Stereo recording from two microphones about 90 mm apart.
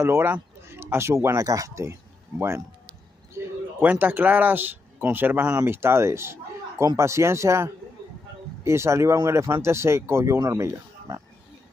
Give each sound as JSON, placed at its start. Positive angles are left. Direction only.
{"t": 0.0, "sound": "speech", "side_deg": -25}
{"t": 3.4, "sound": "a sound", "side_deg": -30}
{"t": 3.8, "sound": "speech", "side_deg": -15}